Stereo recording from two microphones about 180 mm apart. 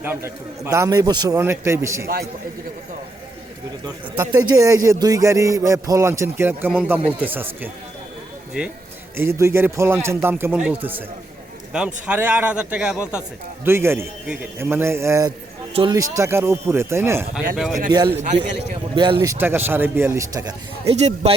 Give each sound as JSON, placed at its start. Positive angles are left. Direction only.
{"t": 0.0, "sound": "speech", "side_deg": -10}
{"t": 3.8, "sound": "speech", "side_deg": -20}
{"t": 9.1, "sound": "speech", "side_deg": -15}
{"t": 15.7, "sound": "speech", "side_deg": -25}
{"t": 17.8, "sound": "a man's voice", "side_deg": -25}
{"t": 18.2, "sound": "speech", "side_deg": -40}
{"t": 19.2, "sound": "speech", "side_deg": -15}
{"t": 20.9, "sound": "speech", "side_deg": -40}